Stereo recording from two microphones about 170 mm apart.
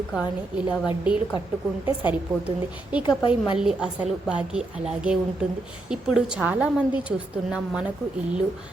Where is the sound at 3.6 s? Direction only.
5° right (ahead or behind).